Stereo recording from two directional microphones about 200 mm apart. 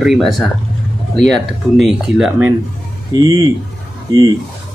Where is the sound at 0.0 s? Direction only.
Centre (ahead or behind).